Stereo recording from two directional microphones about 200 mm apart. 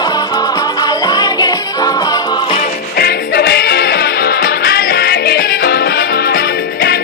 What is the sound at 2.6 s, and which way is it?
Music, 45° left (ahead or behind).